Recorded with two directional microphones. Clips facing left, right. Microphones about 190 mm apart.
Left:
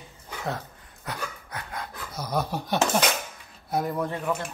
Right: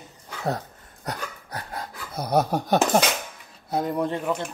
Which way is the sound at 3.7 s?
20° right (ahead or behind).